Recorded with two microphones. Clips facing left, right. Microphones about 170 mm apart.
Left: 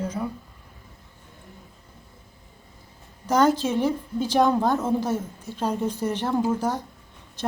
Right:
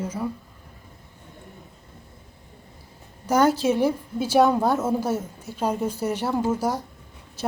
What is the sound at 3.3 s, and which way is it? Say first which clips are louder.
A woman's voice: right 1 dB; 10° right (ahead or behind).